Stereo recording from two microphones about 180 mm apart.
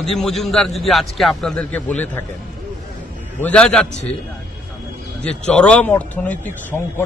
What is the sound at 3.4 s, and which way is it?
Speech, 5° left (ahead or behind).